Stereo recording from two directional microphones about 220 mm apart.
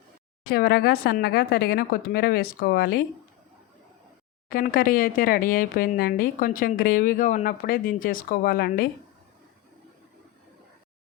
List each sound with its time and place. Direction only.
0.5 s speech: 45° left (ahead or behind)
4.4 s speech: 40° left (ahead or behind)